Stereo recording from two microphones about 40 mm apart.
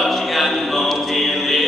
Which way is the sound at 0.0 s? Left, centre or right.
Centre.